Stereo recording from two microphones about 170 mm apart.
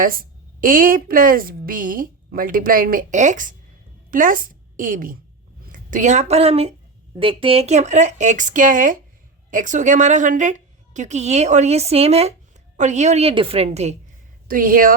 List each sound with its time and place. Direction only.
0.0 s a woman's voice: 55° right (ahead or behind); by 13.9 s 40° right (ahead or behind)
14.4 s a woman's voice: 55° right (ahead or behind)